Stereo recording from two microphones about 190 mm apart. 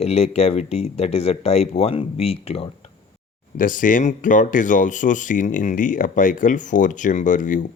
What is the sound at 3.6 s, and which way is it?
Speech, 45° left (ahead or behind).